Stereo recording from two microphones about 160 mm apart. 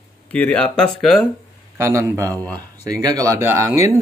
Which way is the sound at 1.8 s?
15° right (ahead or behind).